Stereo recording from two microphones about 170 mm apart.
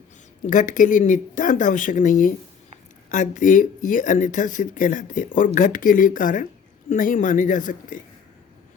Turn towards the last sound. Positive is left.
turn(degrees=50)  # may be behind; listen again after turning